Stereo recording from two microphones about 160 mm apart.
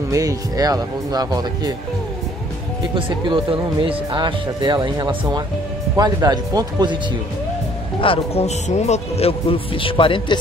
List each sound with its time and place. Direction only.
0.1 s speech: 20° right (ahead or behind)
2.9 s speech: 30° right (ahead or behind)
8.0 s speech: 35° left (ahead or behind)